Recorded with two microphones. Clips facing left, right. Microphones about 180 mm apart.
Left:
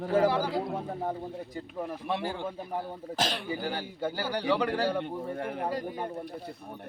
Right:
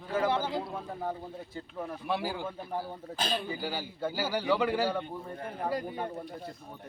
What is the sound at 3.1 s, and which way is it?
Speech, 75° left (ahead or behind).